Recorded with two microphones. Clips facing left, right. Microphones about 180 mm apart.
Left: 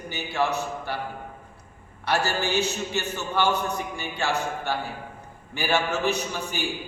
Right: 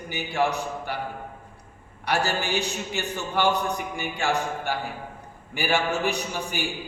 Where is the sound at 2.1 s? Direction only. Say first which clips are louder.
Even; 15° right (ahead or behind).